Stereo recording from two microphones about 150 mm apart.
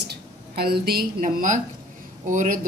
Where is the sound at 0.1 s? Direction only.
90° right.